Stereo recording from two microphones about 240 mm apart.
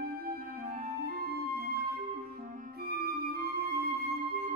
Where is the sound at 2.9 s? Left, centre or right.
Right.